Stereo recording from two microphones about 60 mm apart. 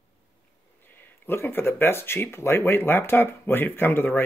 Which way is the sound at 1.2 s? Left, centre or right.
Left.